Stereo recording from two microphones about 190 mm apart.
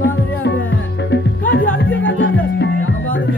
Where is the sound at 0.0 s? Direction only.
70° left (ahead or behind).